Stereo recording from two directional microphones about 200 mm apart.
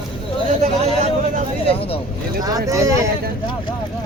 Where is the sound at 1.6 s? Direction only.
30° left (ahead or behind).